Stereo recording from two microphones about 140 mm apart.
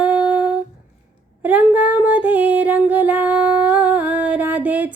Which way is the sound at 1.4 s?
10° right (ahead or behind).